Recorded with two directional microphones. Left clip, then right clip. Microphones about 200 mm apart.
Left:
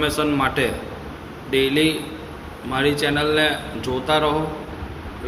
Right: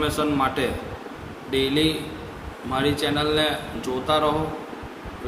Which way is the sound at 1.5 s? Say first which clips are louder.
Left 3 dB; 25° right (ahead or behind).